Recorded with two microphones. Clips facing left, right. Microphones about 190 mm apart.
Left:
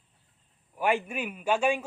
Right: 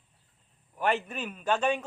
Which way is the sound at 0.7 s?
10° left (ahead or behind).